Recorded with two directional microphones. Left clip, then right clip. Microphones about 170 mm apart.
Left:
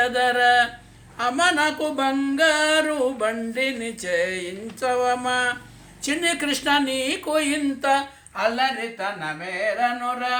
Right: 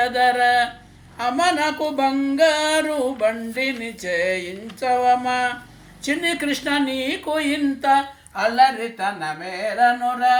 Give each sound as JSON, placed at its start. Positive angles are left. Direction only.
{"t": 0.0, "sound": "speech", "side_deg": 20}
{"t": 1.2, "sound": "a sound", "side_deg": 15}
{"t": 6.1, "sound": "speech", "side_deg": 20}
{"t": 8.4, "sound": "speech", "side_deg": 0}
{"t": 9.2, "sound": "music", "side_deg": -15}